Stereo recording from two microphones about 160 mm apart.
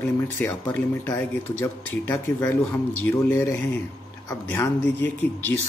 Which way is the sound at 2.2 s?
15° left (ahead or behind).